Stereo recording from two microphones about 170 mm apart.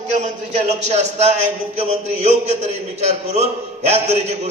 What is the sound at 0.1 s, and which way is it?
A man's voice, 40° right (ahead or behind).